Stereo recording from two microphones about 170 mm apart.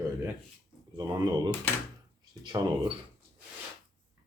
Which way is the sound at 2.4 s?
25° right (ahead or behind).